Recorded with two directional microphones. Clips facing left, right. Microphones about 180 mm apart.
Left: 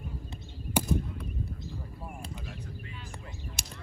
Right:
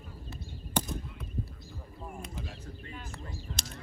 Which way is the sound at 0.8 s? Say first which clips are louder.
Left 2 dB; 10° left (ahead or behind).